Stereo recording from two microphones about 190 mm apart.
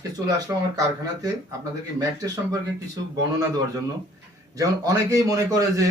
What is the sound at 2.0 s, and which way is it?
Speech, 20° right (ahead or behind).